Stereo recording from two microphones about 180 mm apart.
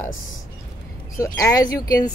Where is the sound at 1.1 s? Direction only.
20° left (ahead or behind).